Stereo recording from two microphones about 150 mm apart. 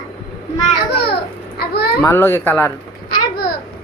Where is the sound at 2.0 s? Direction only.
15° left (ahead or behind).